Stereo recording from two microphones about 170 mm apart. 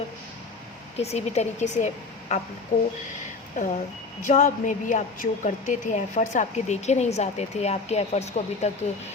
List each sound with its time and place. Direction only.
0.9 s a woman's voice: 40° left (ahead or behind)
2.7 s a woman's voice: 55° left (ahead or behind)